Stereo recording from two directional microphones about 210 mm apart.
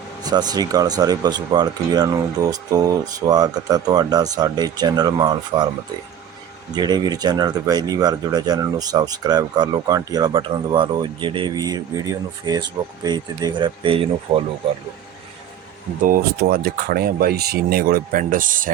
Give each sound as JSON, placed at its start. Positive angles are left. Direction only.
{"t": 0.2, "sound": "speech", "side_deg": -20}
{"t": 6.7, "sound": "speech", "side_deg": -20}
{"t": 16.0, "sound": "speech", "side_deg": -40}